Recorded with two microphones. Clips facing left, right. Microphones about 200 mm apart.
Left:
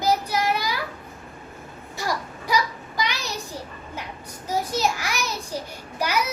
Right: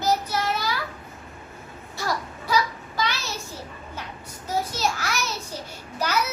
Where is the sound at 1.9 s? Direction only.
15° left (ahead or behind).